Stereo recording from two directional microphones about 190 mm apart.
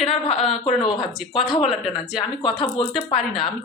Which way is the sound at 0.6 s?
25° left (ahead or behind).